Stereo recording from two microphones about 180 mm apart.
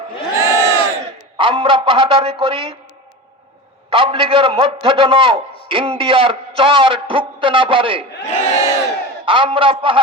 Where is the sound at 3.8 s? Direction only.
30° right (ahead or behind).